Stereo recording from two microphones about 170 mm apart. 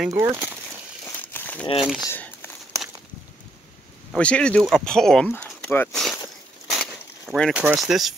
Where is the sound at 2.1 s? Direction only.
15° left (ahead or behind).